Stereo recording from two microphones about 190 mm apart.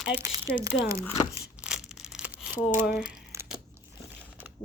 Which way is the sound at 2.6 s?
45° left (ahead or behind).